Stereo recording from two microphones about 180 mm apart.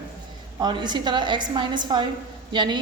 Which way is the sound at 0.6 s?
25° right (ahead or behind).